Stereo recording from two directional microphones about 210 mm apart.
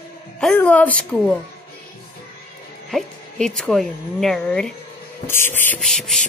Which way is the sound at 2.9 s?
Centre (ahead or behind).